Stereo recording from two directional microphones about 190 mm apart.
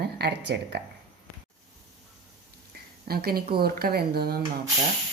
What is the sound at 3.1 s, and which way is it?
Speech, 55° right (ahead or behind).